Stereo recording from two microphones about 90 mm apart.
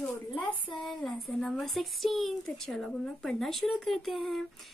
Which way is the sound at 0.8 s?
5° left (ahead or behind).